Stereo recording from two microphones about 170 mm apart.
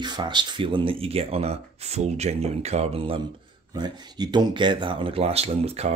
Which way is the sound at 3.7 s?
25° right (ahead or behind).